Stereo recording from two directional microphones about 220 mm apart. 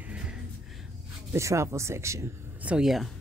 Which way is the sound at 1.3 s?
15° right (ahead or behind).